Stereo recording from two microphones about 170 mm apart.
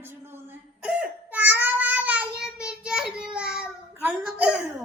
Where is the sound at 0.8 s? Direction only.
5° right (ahead or behind).